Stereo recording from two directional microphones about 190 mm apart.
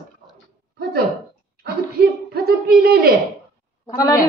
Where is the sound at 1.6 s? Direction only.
55° right (ahead or behind).